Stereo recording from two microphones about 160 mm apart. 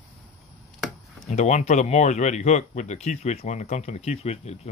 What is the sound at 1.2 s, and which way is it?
Speech, 45° left (ahead or behind).